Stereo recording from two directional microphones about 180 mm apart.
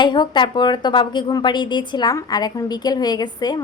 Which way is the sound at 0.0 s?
25° left (ahead or behind).